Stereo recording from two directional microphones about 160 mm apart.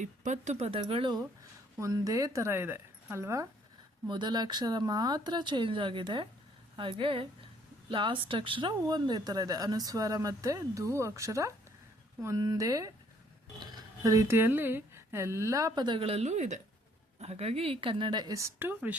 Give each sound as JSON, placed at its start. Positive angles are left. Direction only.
{"t": 0.0, "sound": "speech", "side_deg": -50}
{"t": 1.8, "sound": "a woman's voice", "side_deg": -20}
{"t": 4.0, "sound": "speech", "side_deg": -30}